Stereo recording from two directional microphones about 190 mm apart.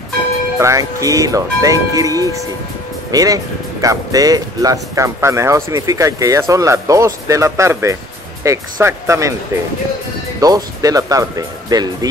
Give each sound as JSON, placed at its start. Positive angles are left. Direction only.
{"t": 0.6, "sound": "speech", "side_deg": -15}